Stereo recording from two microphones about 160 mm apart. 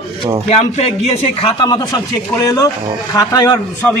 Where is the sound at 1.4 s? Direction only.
25° left (ahead or behind).